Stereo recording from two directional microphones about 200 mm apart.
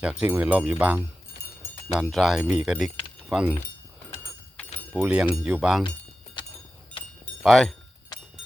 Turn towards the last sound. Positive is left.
turn(degrees=0)  # may be behind; listen again after turning